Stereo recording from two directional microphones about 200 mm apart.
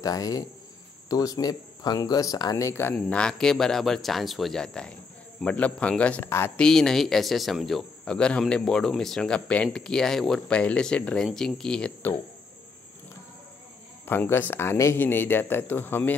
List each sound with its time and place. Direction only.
0.0 s speech: 20° left (ahead or behind)
14.0 s speech: 10° left (ahead or behind)